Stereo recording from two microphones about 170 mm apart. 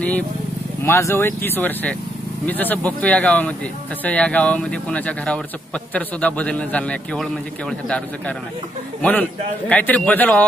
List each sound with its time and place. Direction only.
0.8 s a man's voice: 15° left (ahead or behind)
9.0 s a man's voice: 10° left (ahead or behind)